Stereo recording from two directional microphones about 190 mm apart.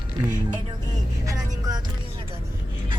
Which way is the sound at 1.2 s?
20° right (ahead or behind).